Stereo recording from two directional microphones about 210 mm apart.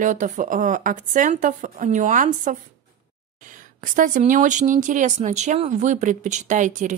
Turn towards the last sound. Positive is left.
turn(degrees=-35)  # may be behind; listen again after turning